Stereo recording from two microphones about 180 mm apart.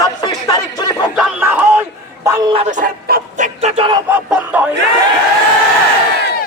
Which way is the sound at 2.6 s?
45° right (ahead or behind).